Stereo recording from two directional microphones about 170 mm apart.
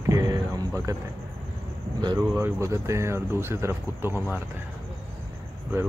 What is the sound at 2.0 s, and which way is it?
Speech, 25° right (ahead or behind).